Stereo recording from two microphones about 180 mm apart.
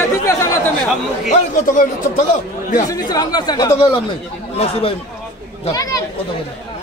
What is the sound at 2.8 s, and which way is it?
Speech, 20° left (ahead or behind).